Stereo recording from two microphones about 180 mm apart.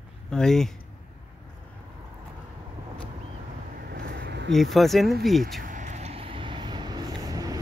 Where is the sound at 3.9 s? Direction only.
65° right (ahead or behind).